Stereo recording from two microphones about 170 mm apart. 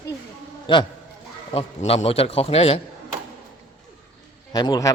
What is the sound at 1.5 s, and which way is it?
A man's voice, 40° left (ahead or behind).